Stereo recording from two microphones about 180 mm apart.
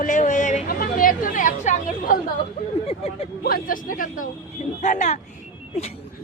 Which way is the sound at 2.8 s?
35° left (ahead or behind).